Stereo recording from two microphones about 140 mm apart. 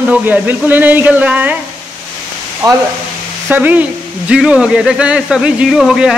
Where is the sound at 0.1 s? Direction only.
10° right (ahead or behind).